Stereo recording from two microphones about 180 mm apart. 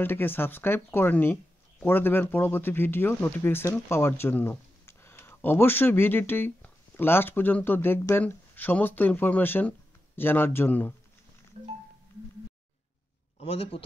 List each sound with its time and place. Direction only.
0.0 s speech: 10° left (ahead or behind)
13.4 s a man's voice: 35° left (ahead or behind)